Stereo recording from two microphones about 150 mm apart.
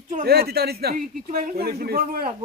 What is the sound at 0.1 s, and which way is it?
Speech, 75° right (ahead or behind).